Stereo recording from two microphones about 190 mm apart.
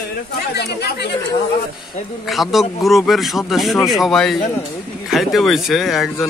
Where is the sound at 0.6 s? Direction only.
60° left (ahead or behind).